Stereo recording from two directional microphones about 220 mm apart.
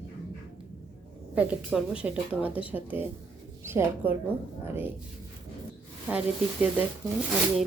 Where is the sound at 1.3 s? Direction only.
5° right (ahead or behind).